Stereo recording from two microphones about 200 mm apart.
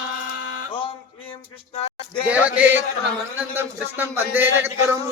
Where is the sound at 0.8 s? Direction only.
25° left (ahead or behind).